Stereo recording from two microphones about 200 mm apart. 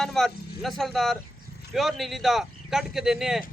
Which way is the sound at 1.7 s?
Centre (ahead or behind).